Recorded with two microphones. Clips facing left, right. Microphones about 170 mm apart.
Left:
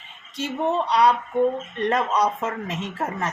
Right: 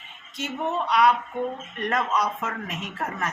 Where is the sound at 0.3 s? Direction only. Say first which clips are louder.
Left 4 dB; 35° left (ahead or behind).